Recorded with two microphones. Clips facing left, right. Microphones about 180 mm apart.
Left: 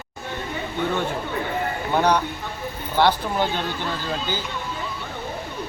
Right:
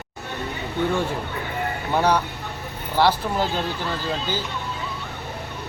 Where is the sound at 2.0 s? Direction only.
5° right (ahead or behind).